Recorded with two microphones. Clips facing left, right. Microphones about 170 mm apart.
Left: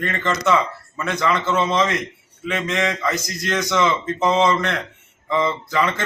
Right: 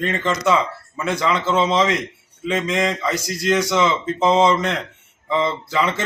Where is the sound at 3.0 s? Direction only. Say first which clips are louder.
Right 1 dB; 10° right (ahead or behind).